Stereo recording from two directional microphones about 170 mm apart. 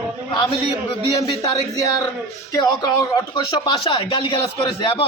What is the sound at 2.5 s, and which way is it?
A man's voice, 25° left (ahead or behind).